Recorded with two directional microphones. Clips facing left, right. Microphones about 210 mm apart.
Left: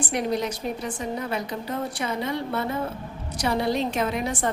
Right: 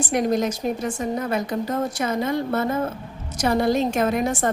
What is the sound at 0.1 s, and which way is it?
A woman's voice, 45° right (ahead or behind).